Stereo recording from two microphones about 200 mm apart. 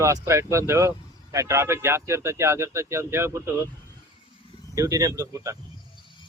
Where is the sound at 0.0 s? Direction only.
15° right (ahead or behind).